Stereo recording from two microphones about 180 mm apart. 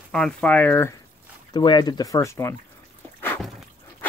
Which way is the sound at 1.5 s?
25° left (ahead or behind).